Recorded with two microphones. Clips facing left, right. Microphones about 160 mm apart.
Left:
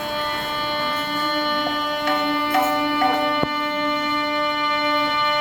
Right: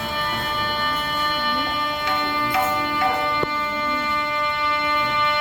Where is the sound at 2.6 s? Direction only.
5° left (ahead or behind).